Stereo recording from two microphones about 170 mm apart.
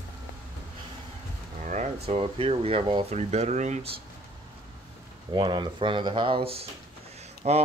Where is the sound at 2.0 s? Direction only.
30° right (ahead or behind).